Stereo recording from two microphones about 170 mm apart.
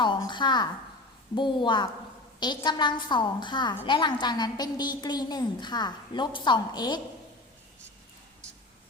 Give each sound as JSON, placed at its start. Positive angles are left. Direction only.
{"t": 0.0, "sound": "a woman's voice", "side_deg": 25}